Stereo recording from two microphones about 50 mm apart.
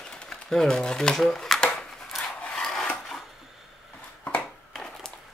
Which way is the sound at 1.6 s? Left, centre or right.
Centre.